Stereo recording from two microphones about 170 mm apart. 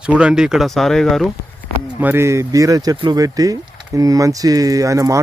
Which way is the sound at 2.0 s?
10° right (ahead or behind).